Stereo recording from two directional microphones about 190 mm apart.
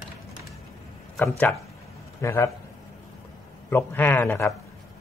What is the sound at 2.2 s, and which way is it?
Speech, 15° left (ahead or behind).